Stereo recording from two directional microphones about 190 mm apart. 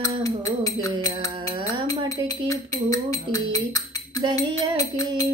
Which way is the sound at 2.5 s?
15° left (ahead or behind).